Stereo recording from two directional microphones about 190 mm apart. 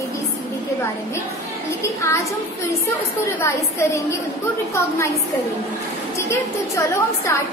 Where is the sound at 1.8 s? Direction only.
15° left (ahead or behind).